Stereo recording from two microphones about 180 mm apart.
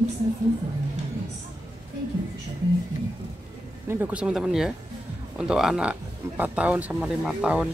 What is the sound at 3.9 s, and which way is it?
Speech, 10° right (ahead or behind).